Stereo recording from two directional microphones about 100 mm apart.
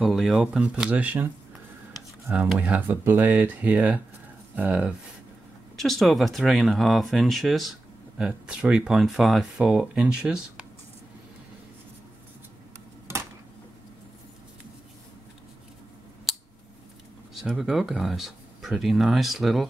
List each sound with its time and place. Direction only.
0.0 s speech: centre (ahead or behind)
2.3 s speech: centre (ahead or behind)
2.6 s speech: 15° right (ahead or behind)
5.8 s speech: centre (ahead or behind)
16.3 s scissors: centre (ahead or behind)
17.3 s speech: 5° right (ahead or behind)